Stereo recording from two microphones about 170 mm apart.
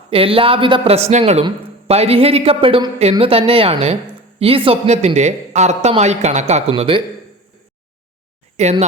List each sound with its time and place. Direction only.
0.1 s a man's voice: 35° right (ahead or behind)
8.6 s a man's voice: 40° right (ahead or behind)